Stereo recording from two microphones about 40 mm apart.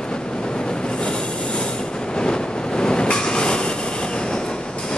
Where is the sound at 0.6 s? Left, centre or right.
Left.